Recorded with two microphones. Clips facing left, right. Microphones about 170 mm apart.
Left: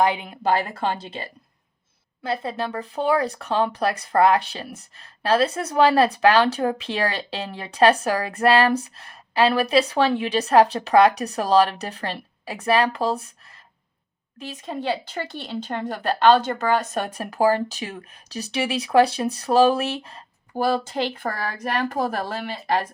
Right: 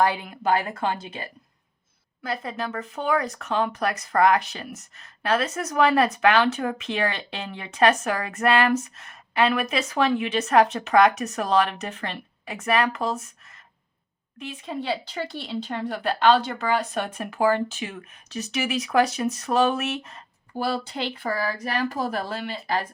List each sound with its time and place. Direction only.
0.0 s a woman's voice: 20° left (ahead or behind)
0.4 s speech: 30° left (ahead or behind)
14.3 s speech: 40° left (ahead or behind)
20.6 s speech: 45° left (ahead or behind)